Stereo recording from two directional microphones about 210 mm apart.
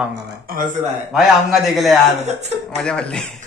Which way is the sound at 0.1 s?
45° right (ahead or behind).